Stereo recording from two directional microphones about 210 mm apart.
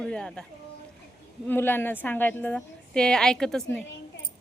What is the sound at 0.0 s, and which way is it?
Speech, 5° left (ahead or behind).